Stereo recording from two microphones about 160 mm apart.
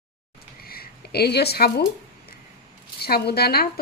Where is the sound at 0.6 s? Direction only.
70° left (ahead or behind).